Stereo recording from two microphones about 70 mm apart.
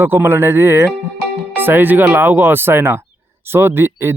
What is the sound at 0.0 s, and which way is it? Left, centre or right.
Speech, right.